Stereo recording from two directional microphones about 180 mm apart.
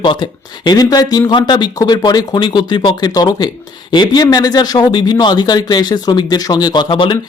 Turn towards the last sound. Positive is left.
turn(degrees=30)  # may be behind; listen again after turning